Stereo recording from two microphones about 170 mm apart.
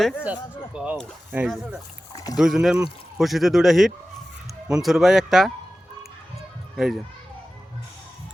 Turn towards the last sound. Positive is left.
turn(degrees=0)  # may be behind; listen again after turning